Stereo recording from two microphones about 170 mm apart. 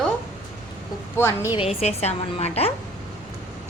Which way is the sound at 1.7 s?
40° left (ahead or behind).